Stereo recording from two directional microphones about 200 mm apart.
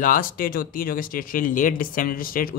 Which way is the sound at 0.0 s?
45° left (ahead or behind).